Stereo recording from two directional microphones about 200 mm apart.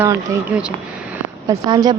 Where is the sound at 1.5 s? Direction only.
20° right (ahead or behind).